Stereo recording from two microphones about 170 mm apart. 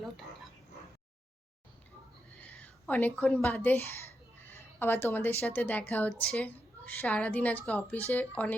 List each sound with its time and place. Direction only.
2.4 s speech: 10° left (ahead or behind)
4.4 s a sound: 15° left (ahead or behind)
5.4 s a woman's voice: 10° left (ahead or behind)